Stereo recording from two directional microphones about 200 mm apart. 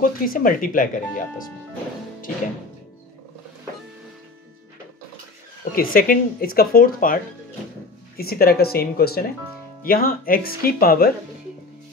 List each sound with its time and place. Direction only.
0.0 s speech: 45° left (ahead or behind)
5.7 s speech: 45° left (ahead or behind)
8.2 s speech: 50° left (ahead or behind)